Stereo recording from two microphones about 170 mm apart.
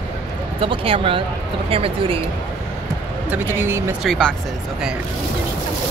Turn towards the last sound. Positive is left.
turn(degrees=0)  # may be behind; listen again after turning